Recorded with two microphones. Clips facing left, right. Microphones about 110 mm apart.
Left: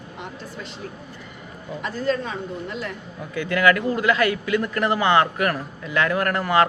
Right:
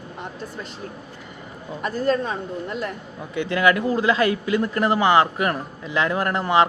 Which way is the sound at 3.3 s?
25° right (ahead or behind).